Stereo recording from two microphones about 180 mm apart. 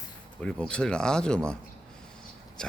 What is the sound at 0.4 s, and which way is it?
Speech, 5° left (ahead or behind).